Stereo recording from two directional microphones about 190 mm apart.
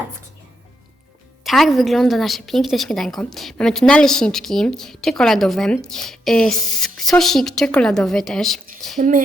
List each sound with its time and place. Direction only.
1.5 s a woman's voice: centre (ahead or behind)
9.0 s speech: 45° right (ahead or behind)